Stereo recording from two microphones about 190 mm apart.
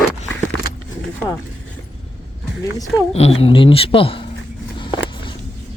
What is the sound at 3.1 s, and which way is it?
Speech, 35° left (ahead or behind).